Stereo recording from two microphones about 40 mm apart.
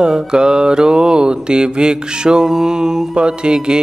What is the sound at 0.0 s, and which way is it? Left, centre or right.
Mantra, centre.